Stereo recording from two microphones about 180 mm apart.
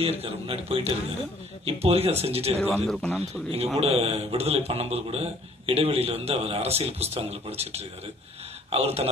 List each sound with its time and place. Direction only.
0.0 s a man's voice: 35° right (ahead or behind)
2.6 s a man's voice: centre (ahead or behind)
3.5 s a man's voice: 35° right (ahead or behind)